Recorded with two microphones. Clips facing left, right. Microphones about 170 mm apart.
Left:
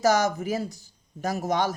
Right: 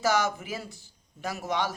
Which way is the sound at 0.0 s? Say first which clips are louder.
Left 4 dB; 40° left (ahead or behind).